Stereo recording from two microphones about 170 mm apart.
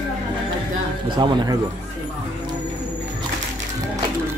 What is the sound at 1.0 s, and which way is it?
Speech, 25° right (ahead or behind).